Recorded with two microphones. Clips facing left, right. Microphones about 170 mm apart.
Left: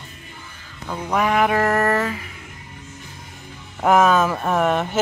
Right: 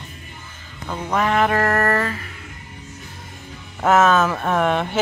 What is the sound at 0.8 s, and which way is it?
Mantra, 5° left (ahead or behind).